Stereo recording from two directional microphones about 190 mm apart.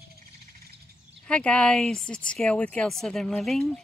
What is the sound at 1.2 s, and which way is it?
Speech, 5° left (ahead or behind).